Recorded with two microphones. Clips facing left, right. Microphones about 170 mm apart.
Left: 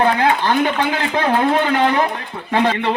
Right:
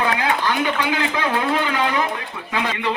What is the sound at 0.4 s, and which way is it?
A man's voice, 45° left (ahead or behind).